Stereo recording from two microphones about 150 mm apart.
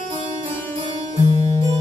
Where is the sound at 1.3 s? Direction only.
45° right (ahead or behind).